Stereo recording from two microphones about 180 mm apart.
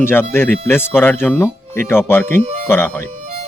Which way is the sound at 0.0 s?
10° left (ahead or behind).